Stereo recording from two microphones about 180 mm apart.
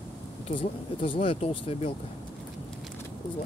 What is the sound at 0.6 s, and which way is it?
Speech, 30° left (ahead or behind).